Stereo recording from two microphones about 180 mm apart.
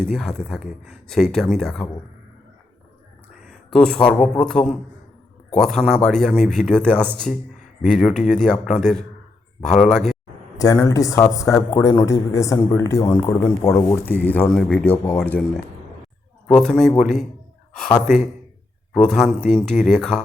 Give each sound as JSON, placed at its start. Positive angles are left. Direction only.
{"t": 0.0, "sound": "speech", "side_deg": 5}
{"t": 3.7, "sound": "speech", "side_deg": 5}
{"t": 10.6, "sound": "a man's voice", "side_deg": 20}